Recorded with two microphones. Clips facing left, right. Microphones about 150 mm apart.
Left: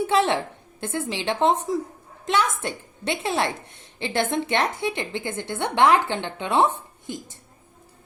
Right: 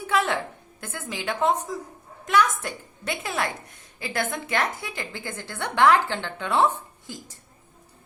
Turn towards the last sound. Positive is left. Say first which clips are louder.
# left 6 dB
turn(degrees=20)  # may be behind; listen again after turning